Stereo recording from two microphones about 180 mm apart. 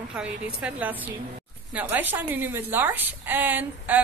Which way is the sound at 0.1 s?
5° right (ahead or behind).